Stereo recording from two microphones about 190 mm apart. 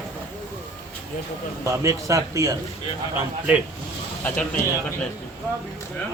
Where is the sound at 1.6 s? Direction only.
15° right (ahead or behind).